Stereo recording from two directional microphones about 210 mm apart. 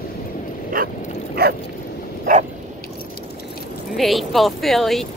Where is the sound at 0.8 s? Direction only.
40° right (ahead or behind).